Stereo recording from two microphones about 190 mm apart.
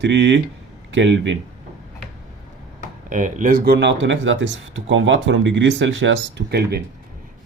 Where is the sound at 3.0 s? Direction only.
40° right (ahead or behind); by 6.8 s 60° right (ahead or behind).